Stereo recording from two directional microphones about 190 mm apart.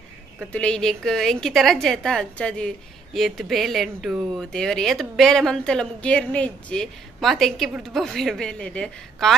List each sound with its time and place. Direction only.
0.5 s speech: 5° left (ahead or behind)